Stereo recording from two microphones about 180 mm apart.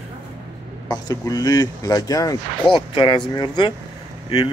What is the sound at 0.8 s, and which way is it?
Speech, 20° left (ahead or behind).